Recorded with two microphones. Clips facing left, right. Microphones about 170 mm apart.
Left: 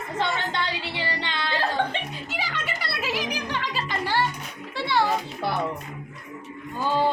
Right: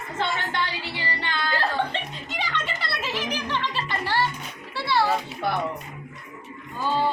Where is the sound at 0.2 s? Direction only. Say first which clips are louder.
Even; 20° left (ahead or behind).